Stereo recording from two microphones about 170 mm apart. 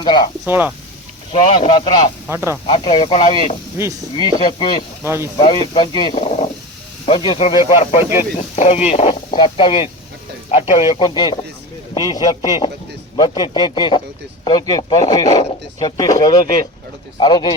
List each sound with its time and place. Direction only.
0.0 s speech: 25° left (ahead or behind)
0.4 s speech: 10° right (ahead or behind)
1.3 s speech: 45° left (ahead or behind)
1.6 s speech: 30° left (ahead or behind)
2.3 s speech: 15° right (ahead or behind)
2.6 s speech: 30° left (ahead or behind)
5.0 s speech: 15° right (ahead or behind)
5.7 s speech: 30° left (ahead or behind)
6.1 s speech: 40° left (ahead or behind)
9.3 s speech: 30° left (ahead or behind)